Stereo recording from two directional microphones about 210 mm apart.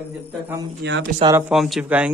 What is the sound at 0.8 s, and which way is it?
Speech, 55° right (ahead or behind).